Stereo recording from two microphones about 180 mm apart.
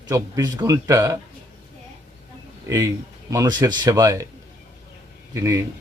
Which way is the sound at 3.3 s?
20° right (ahead or behind).